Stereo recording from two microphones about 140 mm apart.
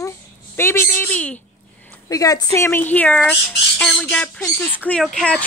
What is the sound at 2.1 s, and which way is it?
Speech, 25° left (ahead or behind).